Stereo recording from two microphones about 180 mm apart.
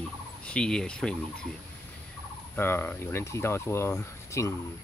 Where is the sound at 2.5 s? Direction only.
15° left (ahead or behind).